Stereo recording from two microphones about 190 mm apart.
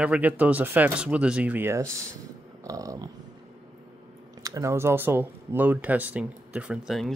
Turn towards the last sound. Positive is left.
turn(degrees=0)  # may be behind; listen again after turning